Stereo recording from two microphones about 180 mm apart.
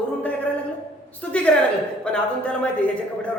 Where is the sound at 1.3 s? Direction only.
5° left (ahead or behind).